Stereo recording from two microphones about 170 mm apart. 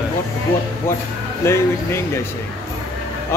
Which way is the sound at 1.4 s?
15° left (ahead or behind).